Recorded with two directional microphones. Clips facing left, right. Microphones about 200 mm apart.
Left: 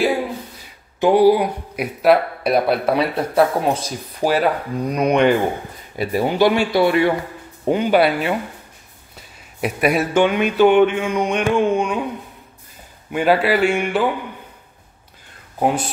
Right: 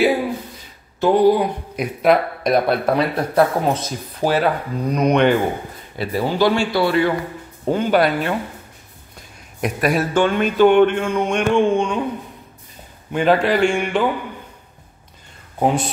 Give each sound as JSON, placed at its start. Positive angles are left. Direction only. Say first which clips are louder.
{"t": 1.0, "sound": "speech", "louder": "left 1 dB", "side_deg": 10}
{"t": 13.1, "sound": "a man's voice", "louder": "even", "side_deg": 5}